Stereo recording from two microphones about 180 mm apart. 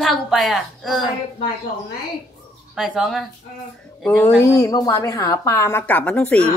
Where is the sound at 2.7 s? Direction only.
Centre (ahead or behind).